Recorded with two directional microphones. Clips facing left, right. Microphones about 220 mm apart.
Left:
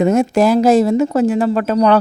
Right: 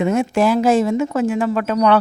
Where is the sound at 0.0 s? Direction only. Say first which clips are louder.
Left 4 dB; 40° left (ahead or behind).